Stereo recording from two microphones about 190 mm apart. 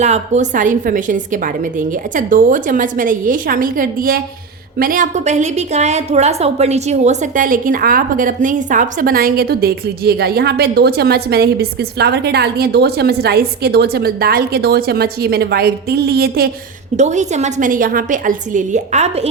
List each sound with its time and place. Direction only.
0.0 s a woman's voice: 40° right (ahead or behind); by 16.5 s 55° right (ahead or behind)
17.0 s a woman's voice: 40° right (ahead or behind)